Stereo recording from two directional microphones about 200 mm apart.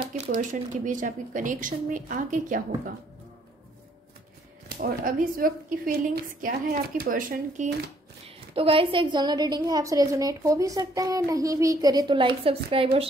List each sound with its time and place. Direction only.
0.3 s speech: 40° right (ahead or behind)
4.6 s speech: 50° right (ahead or behind)
8.5 s a woman's voice: 25° right (ahead or behind)